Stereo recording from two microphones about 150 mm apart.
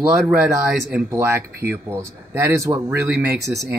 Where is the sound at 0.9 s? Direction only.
15° right (ahead or behind).